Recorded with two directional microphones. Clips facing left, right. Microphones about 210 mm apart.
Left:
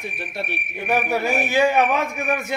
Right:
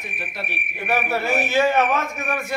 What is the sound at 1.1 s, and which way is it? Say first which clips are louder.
Speech: right 1 dB; 15° left (ahead or behind).